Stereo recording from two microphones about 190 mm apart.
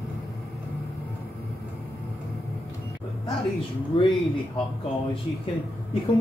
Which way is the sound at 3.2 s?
25° left (ahead or behind).